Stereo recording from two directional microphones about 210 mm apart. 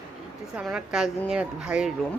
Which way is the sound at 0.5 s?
5° right (ahead or behind).